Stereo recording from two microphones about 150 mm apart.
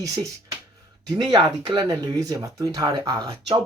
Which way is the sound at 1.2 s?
30° right (ahead or behind).